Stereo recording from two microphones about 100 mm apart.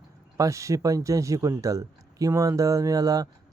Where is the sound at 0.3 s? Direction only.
30° right (ahead or behind).